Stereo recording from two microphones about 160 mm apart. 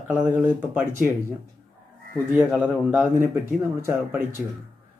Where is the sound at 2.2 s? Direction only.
10° right (ahead or behind).